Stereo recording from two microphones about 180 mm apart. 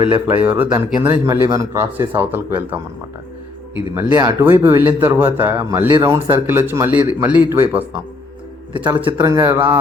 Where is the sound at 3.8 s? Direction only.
10° right (ahead or behind).